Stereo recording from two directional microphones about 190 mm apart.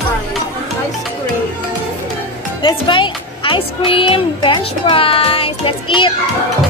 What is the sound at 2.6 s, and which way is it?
Music, 25° left (ahead or behind).